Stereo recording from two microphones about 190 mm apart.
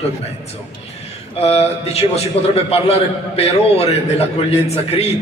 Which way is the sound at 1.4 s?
30° left (ahead or behind).